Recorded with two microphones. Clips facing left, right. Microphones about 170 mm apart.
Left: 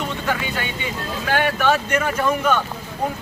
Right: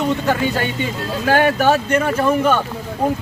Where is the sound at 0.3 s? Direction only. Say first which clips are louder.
Right 6 dB; 40° right (ahead or behind).